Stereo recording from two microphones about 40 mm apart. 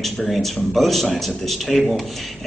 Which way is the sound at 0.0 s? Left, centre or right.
Centre.